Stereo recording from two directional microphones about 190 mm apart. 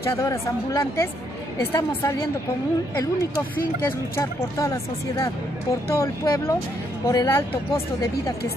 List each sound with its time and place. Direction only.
0.0 s speech: 15° left (ahead or behind)
3.0 s speech: 15° left (ahead or behind)